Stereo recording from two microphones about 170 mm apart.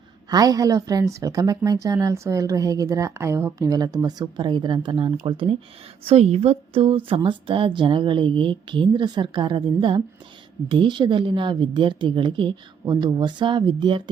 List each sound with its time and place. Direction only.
0.3 s a woman's voice: 20° right (ahead or behind)